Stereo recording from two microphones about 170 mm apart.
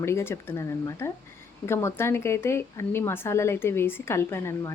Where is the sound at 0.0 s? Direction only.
15° left (ahead or behind).